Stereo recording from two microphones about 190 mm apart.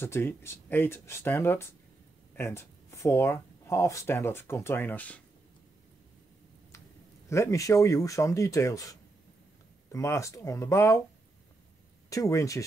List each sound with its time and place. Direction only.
0.0 s speech: 10° left (ahead or behind)
7.2 s speech: 15° left (ahead or behind)
9.9 s speech: 15° left (ahead or behind)
12.1 s speech: 15° left (ahead or behind)